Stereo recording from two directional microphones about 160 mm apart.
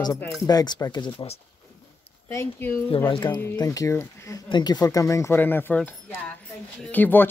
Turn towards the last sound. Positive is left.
turn(degrees=10)  # may be behind; listen again after turning